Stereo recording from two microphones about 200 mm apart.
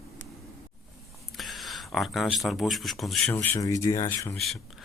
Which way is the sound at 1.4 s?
Centre (ahead or behind).